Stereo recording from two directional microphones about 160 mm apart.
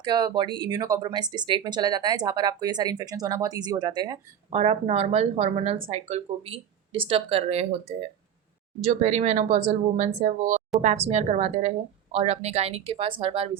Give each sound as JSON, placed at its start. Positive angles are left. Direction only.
{"t": 0.0, "sound": "speech", "side_deg": -25}
{"t": 4.5, "sound": "speech", "side_deg": -40}